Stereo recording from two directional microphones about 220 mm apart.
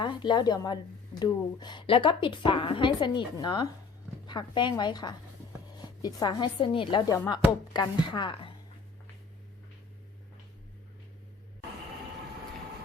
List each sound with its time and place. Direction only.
0.0 s a woman's voice: 20° left (ahead or behind)